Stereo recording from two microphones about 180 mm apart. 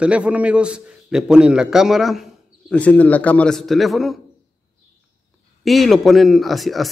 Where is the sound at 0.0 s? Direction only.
5° right (ahead or behind).